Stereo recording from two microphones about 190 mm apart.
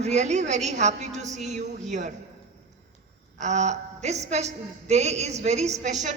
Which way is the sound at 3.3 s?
40° right (ahead or behind).